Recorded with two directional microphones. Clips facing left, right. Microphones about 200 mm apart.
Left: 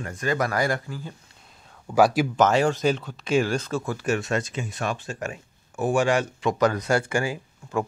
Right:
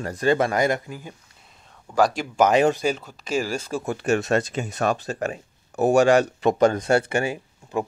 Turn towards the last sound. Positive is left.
turn(degrees=-25)  # may be behind; listen again after turning